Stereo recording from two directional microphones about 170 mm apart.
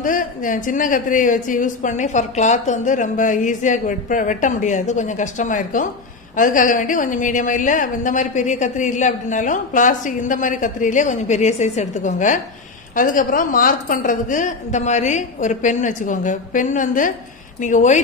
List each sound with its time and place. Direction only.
0.0 s a woman's voice: 50° left (ahead or behind)